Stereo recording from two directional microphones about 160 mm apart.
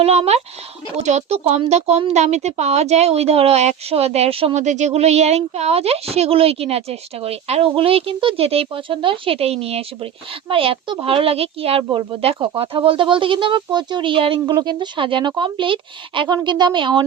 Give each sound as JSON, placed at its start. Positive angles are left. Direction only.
{"t": 0.0, "sound": "speech", "side_deg": -40}